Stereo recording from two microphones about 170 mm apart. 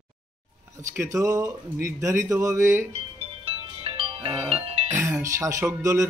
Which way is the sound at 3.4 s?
35° right (ahead or behind).